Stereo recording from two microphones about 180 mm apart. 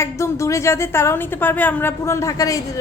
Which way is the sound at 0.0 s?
15° left (ahead or behind).